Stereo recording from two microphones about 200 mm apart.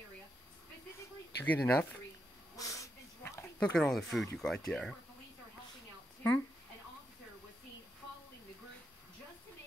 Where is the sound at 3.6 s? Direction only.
5° left (ahead or behind).